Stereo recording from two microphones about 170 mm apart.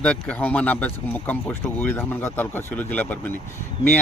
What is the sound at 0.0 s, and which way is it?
Speech, 5° left (ahead or behind).